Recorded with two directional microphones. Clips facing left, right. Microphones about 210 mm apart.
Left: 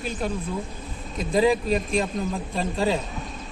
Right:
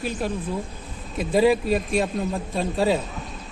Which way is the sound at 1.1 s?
5° right (ahead or behind).